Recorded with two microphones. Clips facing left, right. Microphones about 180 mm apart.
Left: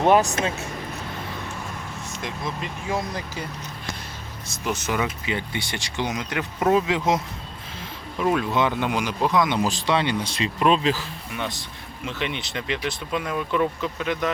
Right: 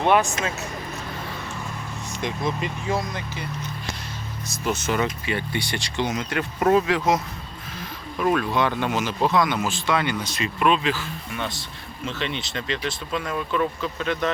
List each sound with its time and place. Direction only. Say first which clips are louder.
0.1 s speech: left 1 dB; 40° left (ahead or behind)
2.2 s speech: right 5 dB; centre (ahead or behind)
3.1 s speech: left 1 dB; 35° left (ahead or behind)
4.5 s speech: right 1 dB; 15° left (ahead or behind)
8.3 s speech: even; 20° left (ahead or behind)
9.6 s speech: left 1 dB; 35° left (ahead or behind)
11.3 s speech: left 2 dB; 20° left (ahead or behind)